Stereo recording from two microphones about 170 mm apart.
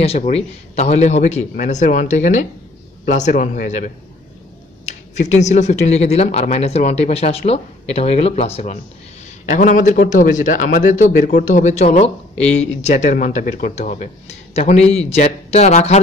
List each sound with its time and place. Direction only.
0.0 s a man's voice: 35° left (ahead or behind)
9.5 s a man's voice: 45° left (ahead or behind)